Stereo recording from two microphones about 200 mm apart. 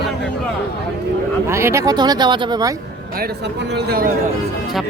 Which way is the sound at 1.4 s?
15° right (ahead or behind).